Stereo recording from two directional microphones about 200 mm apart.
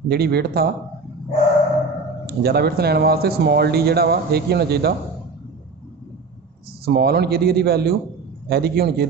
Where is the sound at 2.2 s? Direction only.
55° right (ahead or behind).